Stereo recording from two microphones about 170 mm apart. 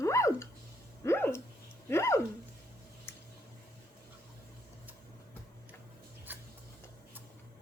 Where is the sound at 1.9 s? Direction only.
15° left (ahead or behind).